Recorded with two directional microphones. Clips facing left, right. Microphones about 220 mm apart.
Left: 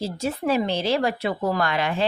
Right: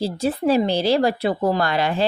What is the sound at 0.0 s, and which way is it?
Speech, 35° right (ahead or behind).